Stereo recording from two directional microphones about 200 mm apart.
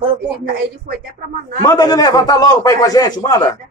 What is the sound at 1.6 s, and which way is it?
A man's voice, 20° left (ahead or behind).